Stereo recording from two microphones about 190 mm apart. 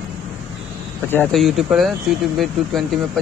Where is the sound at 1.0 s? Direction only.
10° left (ahead or behind).